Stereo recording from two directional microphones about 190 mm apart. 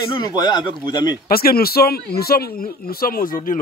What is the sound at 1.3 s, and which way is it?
Speech, 50° left (ahead or behind).